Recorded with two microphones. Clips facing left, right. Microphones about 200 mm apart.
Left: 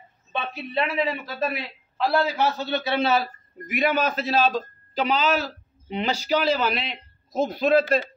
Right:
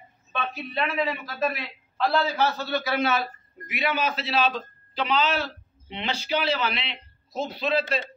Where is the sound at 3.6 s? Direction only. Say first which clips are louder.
Left 4 dB; 45° left (ahead or behind).